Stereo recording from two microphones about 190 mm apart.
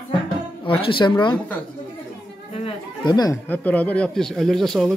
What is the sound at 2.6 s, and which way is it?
Chatter, 25° left (ahead or behind).